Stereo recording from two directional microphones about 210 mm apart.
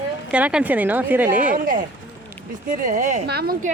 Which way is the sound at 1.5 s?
40° right (ahead or behind).